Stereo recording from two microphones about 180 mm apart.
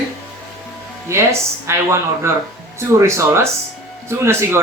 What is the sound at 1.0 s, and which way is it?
Speech, 15° right (ahead or behind).